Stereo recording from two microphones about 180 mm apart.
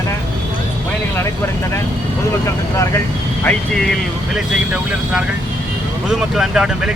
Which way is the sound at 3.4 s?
5° left (ahead or behind).